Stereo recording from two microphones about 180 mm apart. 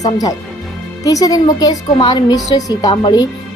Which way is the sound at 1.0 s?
20° left (ahead or behind).